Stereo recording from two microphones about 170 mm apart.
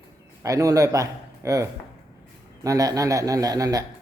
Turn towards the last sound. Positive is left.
turn(degrees=-20)  # may be behind; listen again after turning